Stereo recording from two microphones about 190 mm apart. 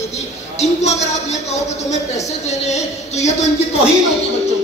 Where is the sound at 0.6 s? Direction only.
35° left (ahead or behind).